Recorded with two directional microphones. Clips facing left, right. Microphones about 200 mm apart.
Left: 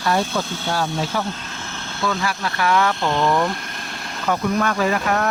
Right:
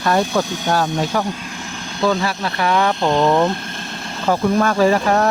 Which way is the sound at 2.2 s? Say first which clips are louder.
Right 2 dB; 25° right (ahead or behind).